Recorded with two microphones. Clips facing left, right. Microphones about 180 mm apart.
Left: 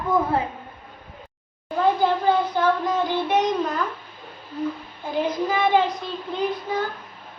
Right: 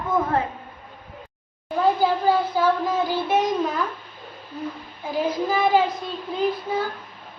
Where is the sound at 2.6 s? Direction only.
5° right (ahead or behind).